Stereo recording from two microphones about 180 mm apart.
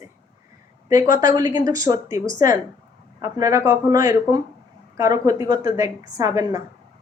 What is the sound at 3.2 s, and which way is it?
A woman's voice, 20° right (ahead or behind).